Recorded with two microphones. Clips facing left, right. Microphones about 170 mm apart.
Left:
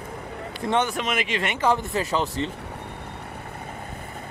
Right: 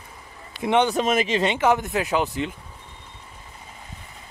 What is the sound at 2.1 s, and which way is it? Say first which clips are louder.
Speech: right 2 dB; 15° right (ahead or behind).